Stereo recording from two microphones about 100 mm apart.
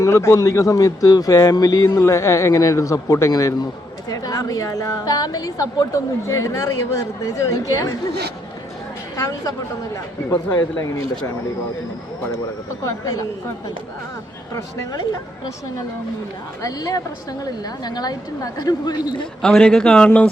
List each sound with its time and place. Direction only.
0.0 s speech: 30° left (ahead or behind)
9.1 s speech: 35° left (ahead or behind)
12.8 s speech: 35° left (ahead or behind)
14.5 s speech: 30° left (ahead or behind)
16.6 s speech: 40° left (ahead or behind)
19.4 s speech: 5° left (ahead or behind)